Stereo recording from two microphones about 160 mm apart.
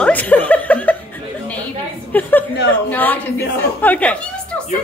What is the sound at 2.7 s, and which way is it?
A woman's voice, 10° left (ahead or behind).